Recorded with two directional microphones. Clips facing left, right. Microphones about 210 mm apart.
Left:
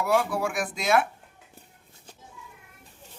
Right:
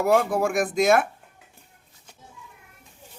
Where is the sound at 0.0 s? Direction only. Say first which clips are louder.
Right 4 dB; 45° right (ahead or behind).